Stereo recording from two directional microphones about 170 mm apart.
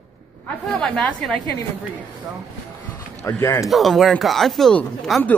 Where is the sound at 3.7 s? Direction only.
Centre (ahead or behind).